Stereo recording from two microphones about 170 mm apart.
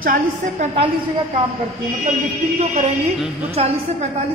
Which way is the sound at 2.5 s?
40° right (ahead or behind).